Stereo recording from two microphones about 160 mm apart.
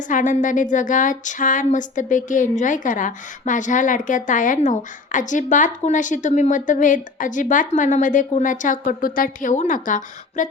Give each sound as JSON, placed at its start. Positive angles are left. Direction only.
{"t": 0.1, "sound": "speech", "side_deg": 55}